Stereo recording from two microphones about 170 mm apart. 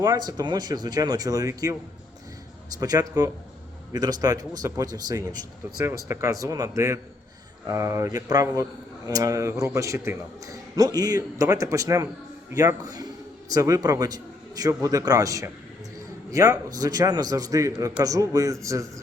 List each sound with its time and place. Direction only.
0.0 s a man's voice: 20° right (ahead or behind)
2.7 s a man's voice: 20° right (ahead or behind)